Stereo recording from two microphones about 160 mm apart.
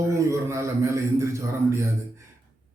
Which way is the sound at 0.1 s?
20° right (ahead or behind).